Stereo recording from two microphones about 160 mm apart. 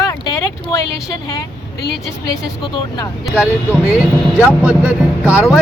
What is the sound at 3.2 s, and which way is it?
Speech, 5° right (ahead or behind).